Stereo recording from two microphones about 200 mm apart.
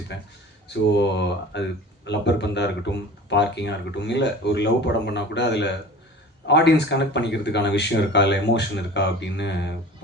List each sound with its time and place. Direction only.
0.7 s speech: 60° left (ahead or behind)